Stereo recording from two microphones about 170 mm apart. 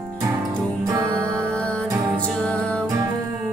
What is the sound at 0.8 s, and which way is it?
Music, 20° right (ahead or behind).